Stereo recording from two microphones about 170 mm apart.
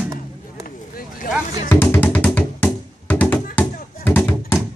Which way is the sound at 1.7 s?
15° left (ahead or behind).